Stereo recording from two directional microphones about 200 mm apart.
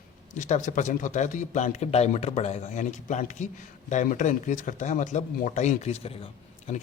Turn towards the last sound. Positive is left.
turn(degrees=30)  # may be behind; listen again after turning